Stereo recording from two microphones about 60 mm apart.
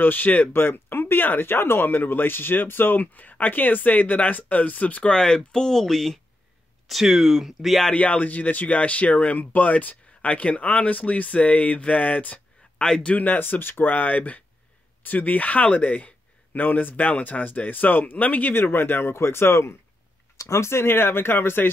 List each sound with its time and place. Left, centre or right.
0.0 s speech: left
5.1 s speech: centre
7.9 s speech: left
12.8 s speech: centre
13.1 s speech: left